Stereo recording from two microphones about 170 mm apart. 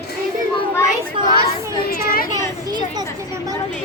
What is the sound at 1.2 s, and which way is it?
Speech, 30° right (ahead or behind).